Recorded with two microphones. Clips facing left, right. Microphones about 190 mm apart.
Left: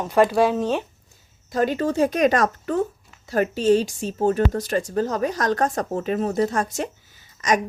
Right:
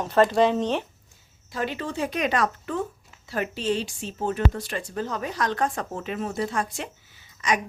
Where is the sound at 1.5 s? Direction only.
45° left (ahead or behind).